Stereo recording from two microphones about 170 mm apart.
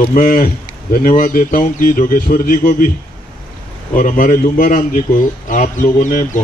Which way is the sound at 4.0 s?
50° left (ahead or behind).